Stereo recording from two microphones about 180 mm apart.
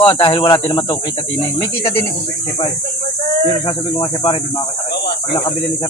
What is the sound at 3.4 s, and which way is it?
Speech, 25° left (ahead or behind).